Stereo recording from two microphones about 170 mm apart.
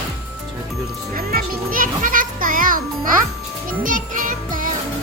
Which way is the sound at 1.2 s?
60° right (ahead or behind).